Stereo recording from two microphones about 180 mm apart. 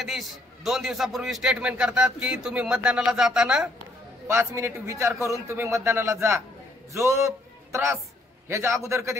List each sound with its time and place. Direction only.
0.0 s a man's voice: centre (ahead or behind)
4.3 s a man's voice: 15° right (ahead or behind)